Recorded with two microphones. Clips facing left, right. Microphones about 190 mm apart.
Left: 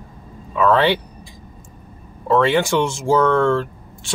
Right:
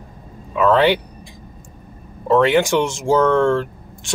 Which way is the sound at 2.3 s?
15° right (ahead or behind).